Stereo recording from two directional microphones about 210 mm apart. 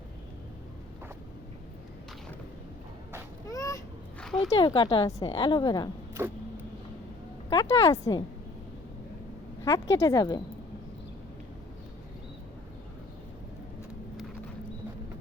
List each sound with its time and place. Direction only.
3.5 s vehicle: 15° left (ahead or behind)
4.4 s a woman's voice: 20° left (ahead or behind)
6.2 s vehicle: 10° right (ahead or behind)
7.5 s speech: 15° left (ahead or behind)
9.6 s speech: 15° left (ahead or behind)